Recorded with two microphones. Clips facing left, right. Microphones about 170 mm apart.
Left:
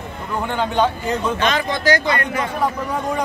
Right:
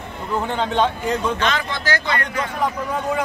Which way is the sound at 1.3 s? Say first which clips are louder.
Left 3 dB; 15° left (ahead or behind).